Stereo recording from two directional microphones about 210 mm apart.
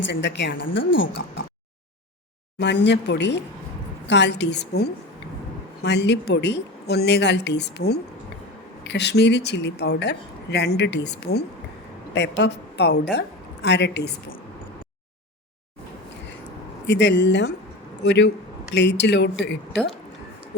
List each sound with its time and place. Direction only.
0.0 s a woman's voice: 55° left (ahead or behind)
2.6 s a woman's voice: 55° left (ahead or behind)
16.8 s a woman's voice: 55° left (ahead or behind)